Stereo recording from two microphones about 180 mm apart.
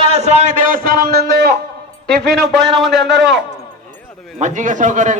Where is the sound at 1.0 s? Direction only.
60° right (ahead or behind).